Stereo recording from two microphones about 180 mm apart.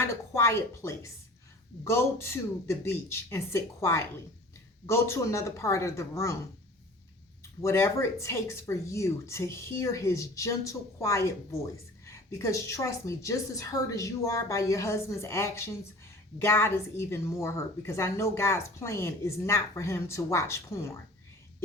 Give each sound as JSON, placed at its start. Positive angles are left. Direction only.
{"t": 0.0, "sound": "a woman's voice", "side_deg": 15}
{"t": 7.6, "sound": "a woman's voice", "side_deg": 15}